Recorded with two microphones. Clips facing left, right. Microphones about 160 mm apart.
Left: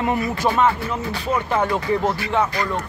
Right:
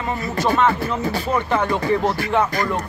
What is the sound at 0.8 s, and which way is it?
Speech, 40° right (ahead or behind).